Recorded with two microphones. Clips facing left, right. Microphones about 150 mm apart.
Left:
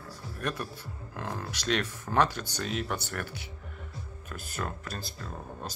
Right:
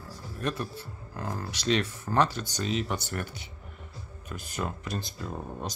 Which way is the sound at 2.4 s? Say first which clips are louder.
Right 3 dB; 10° right (ahead or behind).